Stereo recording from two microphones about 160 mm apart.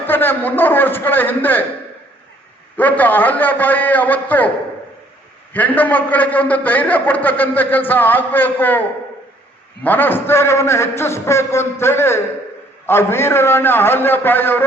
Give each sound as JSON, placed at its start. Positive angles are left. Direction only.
{"t": 0.0, "sound": "a man's voice", "side_deg": 10}
{"t": 2.7, "sound": "a man's voice", "side_deg": 10}
{"t": 5.5, "sound": "a man's voice", "side_deg": 10}